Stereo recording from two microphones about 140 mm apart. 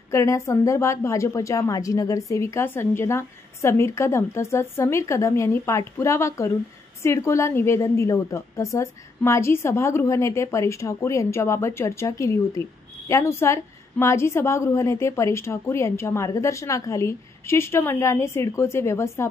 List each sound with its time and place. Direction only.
0.1 s a woman's voice: 20° left (ahead or behind)